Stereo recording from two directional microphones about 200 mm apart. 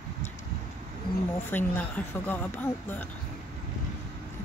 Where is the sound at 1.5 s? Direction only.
10° left (ahead or behind).